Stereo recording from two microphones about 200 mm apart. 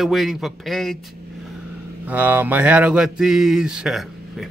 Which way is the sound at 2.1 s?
10° right (ahead or behind).